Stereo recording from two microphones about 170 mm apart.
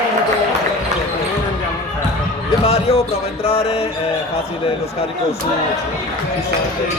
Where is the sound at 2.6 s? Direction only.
35° left (ahead or behind).